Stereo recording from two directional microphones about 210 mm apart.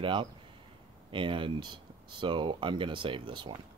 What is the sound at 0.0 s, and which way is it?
Speech, 25° right (ahead or behind).